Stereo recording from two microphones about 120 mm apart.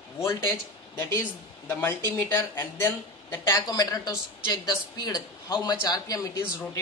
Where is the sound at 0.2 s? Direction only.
25° left (ahead or behind).